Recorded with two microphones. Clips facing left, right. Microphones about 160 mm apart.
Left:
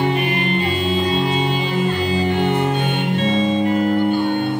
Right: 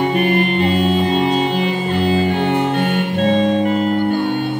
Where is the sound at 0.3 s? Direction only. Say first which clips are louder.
Right 5 dB; 55° right (ahead or behind).